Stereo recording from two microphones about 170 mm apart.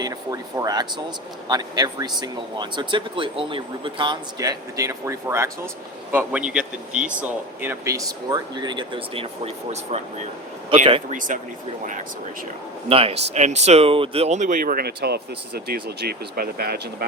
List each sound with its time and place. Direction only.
0.0 s speech: 20° right (ahead or behind)
11.1 s speech: 50° right (ahead or behind)
12.9 s speech: 35° right (ahead or behind); by 17.1 s 65° right (ahead or behind)